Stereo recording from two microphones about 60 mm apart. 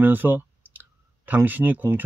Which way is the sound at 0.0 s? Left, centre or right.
Right.